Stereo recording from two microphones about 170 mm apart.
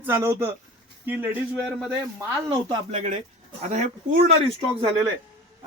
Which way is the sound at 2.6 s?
40° right (ahead or behind).